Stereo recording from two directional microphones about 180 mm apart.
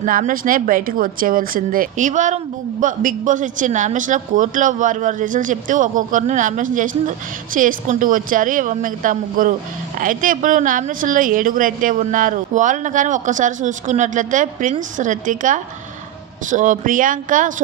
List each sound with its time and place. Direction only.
0.0 s speech: 50° right (ahead or behind)